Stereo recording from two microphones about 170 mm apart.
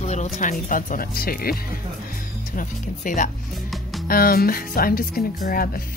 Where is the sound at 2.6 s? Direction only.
50° left (ahead or behind).